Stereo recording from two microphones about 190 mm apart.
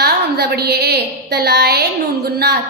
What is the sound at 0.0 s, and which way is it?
A woman's voice, 55° right (ahead or behind).